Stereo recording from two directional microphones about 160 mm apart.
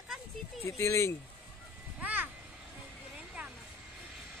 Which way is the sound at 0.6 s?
15° left (ahead or behind).